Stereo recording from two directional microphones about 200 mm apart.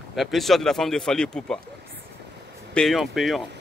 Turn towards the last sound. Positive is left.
turn(degrees=0)  # may be behind; listen again after turning